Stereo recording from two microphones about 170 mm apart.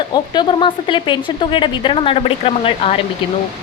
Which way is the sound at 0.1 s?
25° left (ahead or behind).